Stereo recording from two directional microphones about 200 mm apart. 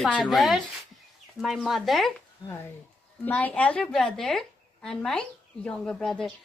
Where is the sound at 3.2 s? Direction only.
10° left (ahead or behind).